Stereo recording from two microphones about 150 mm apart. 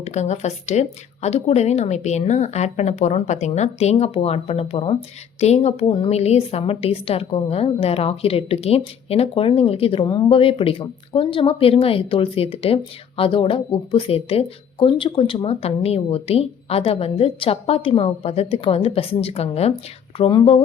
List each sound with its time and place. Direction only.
0.0 s speech: 50° left (ahead or behind)